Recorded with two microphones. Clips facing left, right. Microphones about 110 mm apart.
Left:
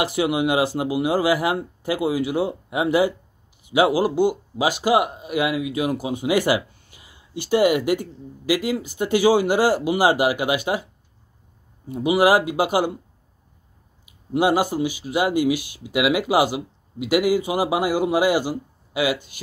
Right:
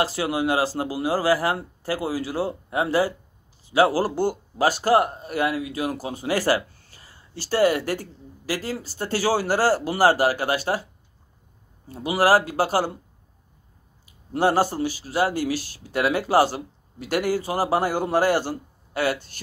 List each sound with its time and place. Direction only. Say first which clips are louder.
0.0 s speech: left 2 dB; 20° left (ahead or behind)
11.9 s speech: left 2 dB; 15° left (ahead or behind)
14.3 s speech: left 1 dB; 15° left (ahead or behind)